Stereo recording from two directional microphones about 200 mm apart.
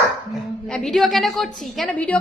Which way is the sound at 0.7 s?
Centre (ahead or behind).